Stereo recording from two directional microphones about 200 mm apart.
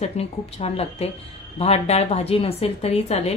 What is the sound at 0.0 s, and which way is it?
A woman's voice, 30° left (ahead or behind).